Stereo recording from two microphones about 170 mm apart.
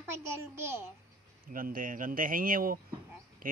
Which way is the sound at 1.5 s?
55° right (ahead or behind).